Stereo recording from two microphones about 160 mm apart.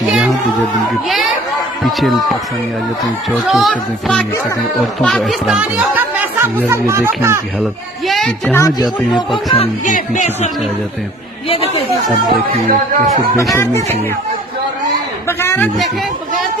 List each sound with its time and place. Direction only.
0.0 s a sound: centre (ahead or behind)
1.0 s speech: centre (ahead or behind)
5.6 s chatter: 10° right (ahead or behind)
6.7 s speech: 15° right (ahead or behind)
8.5 s speech: 15° left (ahead or behind)
9.1 s speech: 30° left (ahead or behind)
9.8 s speech: 50° left (ahead or behind)
15.2 s a sound: 15° left (ahead or behind)